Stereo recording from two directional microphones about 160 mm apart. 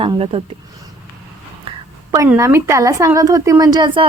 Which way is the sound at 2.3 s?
15° right (ahead or behind).